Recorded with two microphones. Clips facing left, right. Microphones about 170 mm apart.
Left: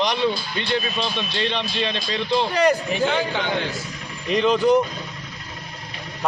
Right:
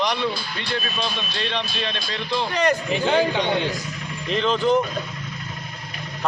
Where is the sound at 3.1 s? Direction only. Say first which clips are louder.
Right 3 dB; 30° right (ahead or behind).